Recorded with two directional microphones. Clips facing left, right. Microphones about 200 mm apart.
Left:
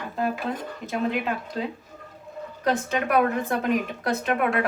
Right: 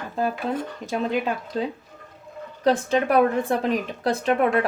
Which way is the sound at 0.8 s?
40° right (ahead or behind).